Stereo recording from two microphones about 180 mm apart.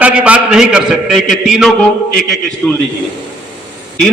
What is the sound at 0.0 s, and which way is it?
A man's voice, 5° right (ahead or behind).